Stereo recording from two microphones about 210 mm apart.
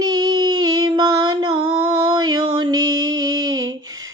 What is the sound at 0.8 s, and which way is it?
Music, 15° right (ahead or behind).